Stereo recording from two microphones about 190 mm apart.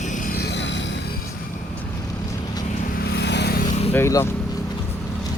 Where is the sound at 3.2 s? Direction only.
65° left (ahead or behind).